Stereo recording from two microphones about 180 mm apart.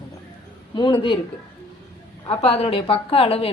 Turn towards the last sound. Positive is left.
turn(degrees=30)  # may be behind; listen again after turning